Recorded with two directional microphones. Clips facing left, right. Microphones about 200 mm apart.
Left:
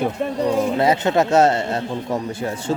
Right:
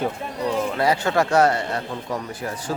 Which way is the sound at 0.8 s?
20° left (ahead or behind).